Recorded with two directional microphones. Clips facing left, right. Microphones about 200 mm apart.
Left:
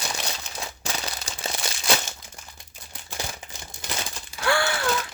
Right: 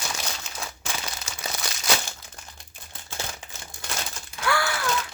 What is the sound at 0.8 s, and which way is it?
Crumpling, 35° left (ahead or behind).